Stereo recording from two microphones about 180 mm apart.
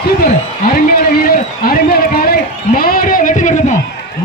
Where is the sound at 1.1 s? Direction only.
55° left (ahead or behind).